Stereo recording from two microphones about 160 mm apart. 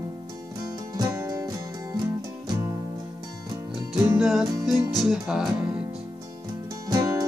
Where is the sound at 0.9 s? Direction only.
20° right (ahead or behind).